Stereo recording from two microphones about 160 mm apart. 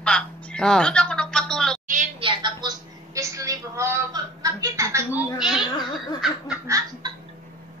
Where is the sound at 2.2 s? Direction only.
30° right (ahead or behind); by 5.3 s 15° right (ahead or behind).